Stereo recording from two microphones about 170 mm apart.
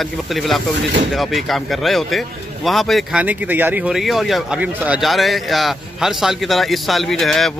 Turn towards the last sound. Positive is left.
turn(degrees=0)  # may be behind; listen again after turning